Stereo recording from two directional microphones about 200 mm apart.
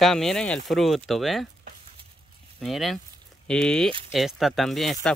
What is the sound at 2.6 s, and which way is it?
Speech, centre (ahead or behind).